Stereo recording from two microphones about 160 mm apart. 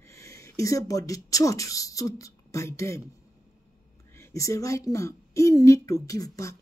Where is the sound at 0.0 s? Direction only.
15° left (ahead or behind).